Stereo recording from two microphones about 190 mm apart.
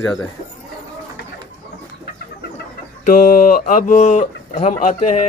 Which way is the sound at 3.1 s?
50° left (ahead or behind).